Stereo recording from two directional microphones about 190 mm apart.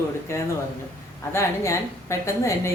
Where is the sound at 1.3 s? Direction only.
15° left (ahead or behind).